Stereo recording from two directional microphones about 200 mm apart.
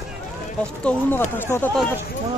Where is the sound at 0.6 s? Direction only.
10° left (ahead or behind).